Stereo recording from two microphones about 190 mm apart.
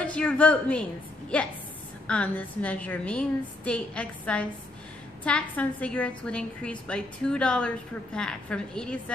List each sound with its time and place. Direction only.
0.0 s a woman's voice: 5° left (ahead or behind)